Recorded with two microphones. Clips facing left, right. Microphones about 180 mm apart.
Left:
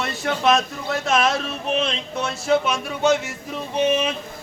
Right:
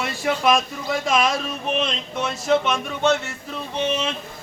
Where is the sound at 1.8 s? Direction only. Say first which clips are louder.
Even; 5° left (ahead or behind).